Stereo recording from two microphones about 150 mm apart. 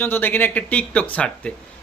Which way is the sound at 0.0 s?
15° left (ahead or behind).